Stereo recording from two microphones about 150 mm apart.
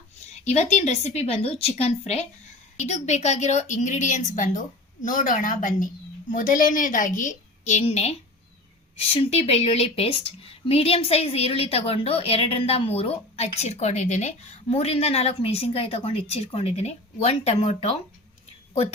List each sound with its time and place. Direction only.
0.4 s a woman's voice: 50° left (ahead or behind)